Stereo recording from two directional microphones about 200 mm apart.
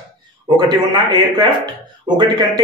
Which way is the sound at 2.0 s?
20° right (ahead or behind).